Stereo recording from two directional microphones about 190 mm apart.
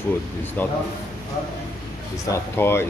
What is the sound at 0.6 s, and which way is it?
Speech, 10° left (ahead or behind).